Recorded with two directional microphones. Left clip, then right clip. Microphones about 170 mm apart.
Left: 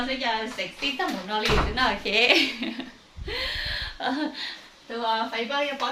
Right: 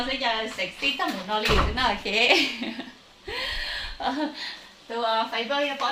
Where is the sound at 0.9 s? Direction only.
15° left (ahead or behind).